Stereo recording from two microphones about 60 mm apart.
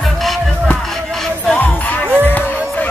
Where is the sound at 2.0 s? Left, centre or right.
Right.